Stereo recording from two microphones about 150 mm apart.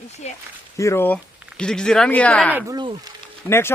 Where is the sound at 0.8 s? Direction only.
15° left (ahead or behind).